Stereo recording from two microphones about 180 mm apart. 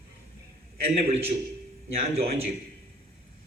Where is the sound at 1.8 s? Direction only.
35° right (ahead or behind).